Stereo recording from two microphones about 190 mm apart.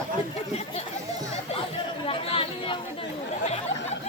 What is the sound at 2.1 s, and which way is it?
Chatter, 30° left (ahead or behind).